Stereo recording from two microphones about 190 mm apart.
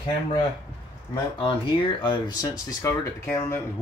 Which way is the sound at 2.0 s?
25° left (ahead or behind).